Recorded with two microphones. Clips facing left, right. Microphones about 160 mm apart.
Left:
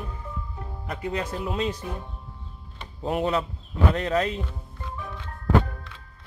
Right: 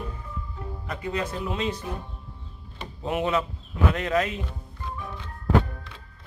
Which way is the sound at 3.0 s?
35° left (ahead or behind).